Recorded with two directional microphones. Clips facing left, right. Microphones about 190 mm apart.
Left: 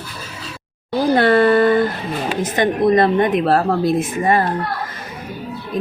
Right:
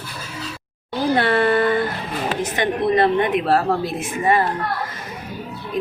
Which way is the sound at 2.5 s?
45° left (ahead or behind).